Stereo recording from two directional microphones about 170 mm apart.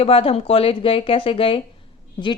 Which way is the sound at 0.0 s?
35° left (ahead or behind).